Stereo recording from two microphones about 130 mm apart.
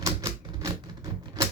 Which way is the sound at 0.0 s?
25° right (ahead or behind).